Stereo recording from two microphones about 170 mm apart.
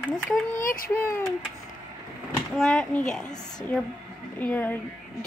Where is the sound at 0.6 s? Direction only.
55° left (ahead or behind).